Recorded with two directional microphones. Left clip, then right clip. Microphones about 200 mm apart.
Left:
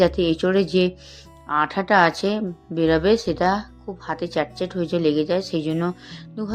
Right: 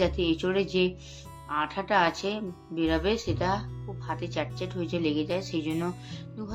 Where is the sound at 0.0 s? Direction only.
35° left (ahead or behind).